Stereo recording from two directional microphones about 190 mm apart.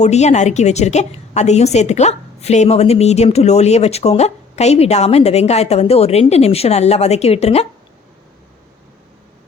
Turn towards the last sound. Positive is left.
turn(degrees=35)  # may be behind; listen again after turning